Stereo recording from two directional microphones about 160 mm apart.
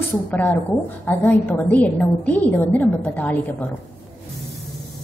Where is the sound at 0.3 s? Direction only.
10° left (ahead or behind).